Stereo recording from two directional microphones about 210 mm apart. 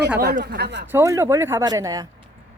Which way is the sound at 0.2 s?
50° right (ahead or behind).